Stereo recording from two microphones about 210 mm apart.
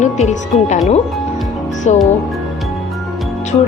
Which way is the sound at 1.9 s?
35° left (ahead or behind).